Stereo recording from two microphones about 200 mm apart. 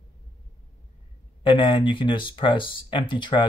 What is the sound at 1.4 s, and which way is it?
Speech, 25° left (ahead or behind).